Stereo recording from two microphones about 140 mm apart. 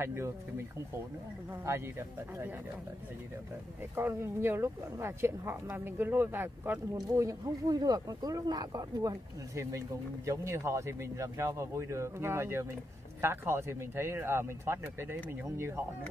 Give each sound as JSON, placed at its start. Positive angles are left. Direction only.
{"t": 0.0, "sound": "speech", "side_deg": -20}
{"t": 1.5, "sound": "speech", "side_deg": -20}
{"t": 3.9, "sound": "speech", "side_deg": -20}